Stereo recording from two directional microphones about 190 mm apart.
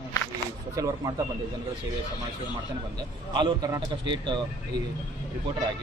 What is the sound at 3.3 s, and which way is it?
A man's voice, 20° right (ahead or behind).